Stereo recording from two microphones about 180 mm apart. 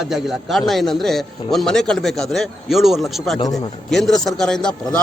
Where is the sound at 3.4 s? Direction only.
20° left (ahead or behind).